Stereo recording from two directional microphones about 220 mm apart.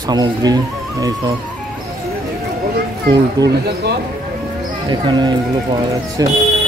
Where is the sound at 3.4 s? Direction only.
15° right (ahead or behind).